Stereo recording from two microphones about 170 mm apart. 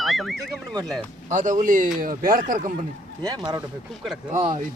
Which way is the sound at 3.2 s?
25° right (ahead or behind).